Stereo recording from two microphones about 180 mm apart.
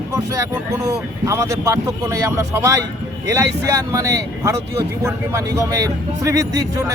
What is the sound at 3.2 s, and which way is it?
Speech, 20° right (ahead or behind).